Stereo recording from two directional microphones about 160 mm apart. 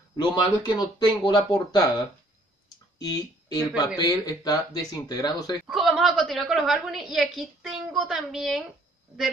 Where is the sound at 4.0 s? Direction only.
25° left (ahead or behind).